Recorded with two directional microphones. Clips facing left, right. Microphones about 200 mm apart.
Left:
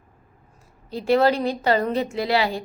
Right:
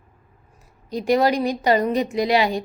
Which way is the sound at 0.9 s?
15° right (ahead or behind).